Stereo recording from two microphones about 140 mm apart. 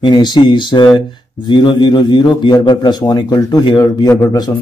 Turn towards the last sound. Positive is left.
turn(degrees=25)  # may be behind; listen again after turning